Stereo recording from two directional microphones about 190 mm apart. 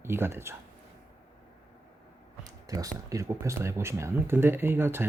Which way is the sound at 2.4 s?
20° right (ahead or behind).